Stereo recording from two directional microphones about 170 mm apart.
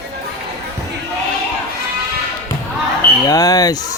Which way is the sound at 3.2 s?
20° left (ahead or behind).